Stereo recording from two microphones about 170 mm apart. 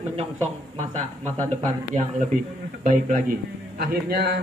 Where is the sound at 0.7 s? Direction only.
40° right (ahead or behind).